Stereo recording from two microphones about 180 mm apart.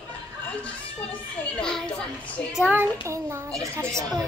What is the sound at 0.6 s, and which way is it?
Children playing, 5° left (ahead or behind).